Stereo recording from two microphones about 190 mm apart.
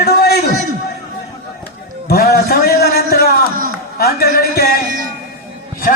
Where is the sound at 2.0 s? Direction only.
55° left (ahead or behind).